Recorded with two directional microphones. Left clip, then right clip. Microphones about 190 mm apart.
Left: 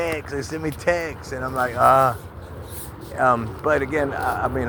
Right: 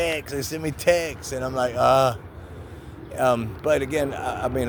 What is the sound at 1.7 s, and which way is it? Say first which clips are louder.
Speech: left 3 dB; 45° right (ahead or behind).